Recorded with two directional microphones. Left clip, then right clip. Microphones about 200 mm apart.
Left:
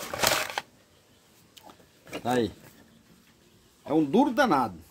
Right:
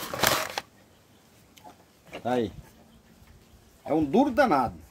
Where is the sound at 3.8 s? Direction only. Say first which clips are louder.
Even; centre (ahead or behind).